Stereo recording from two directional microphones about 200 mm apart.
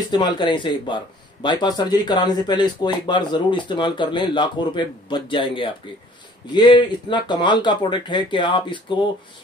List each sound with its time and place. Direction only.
0.1 s speech: 20° left (ahead or behind)